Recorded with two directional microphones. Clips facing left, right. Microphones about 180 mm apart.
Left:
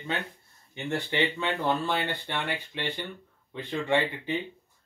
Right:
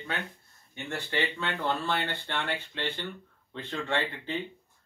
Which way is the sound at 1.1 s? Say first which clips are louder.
Left 2 dB; 15° left (ahead or behind).